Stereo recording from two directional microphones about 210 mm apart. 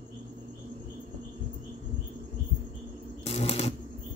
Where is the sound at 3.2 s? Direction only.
30° left (ahead or behind).